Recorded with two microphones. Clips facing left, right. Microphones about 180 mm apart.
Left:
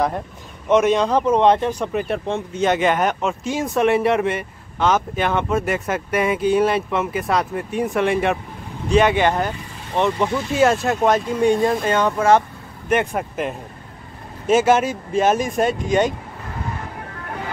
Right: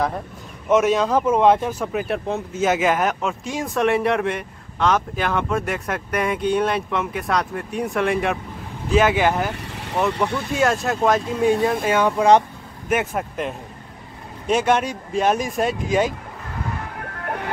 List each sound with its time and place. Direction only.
0.7 s speech: 5° right (ahead or behind)
10.5 s speech: centre (ahead or behind); by 12.4 s 15° right (ahead or behind)
12.8 s speech: 5° right (ahead or behind)
17.2 s music: 60° right (ahead or behind)